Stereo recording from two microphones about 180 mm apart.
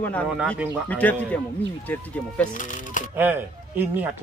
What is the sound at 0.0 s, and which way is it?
Speech, 10° left (ahead or behind).